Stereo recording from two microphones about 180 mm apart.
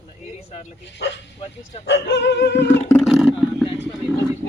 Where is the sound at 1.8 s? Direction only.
75° left (ahead or behind).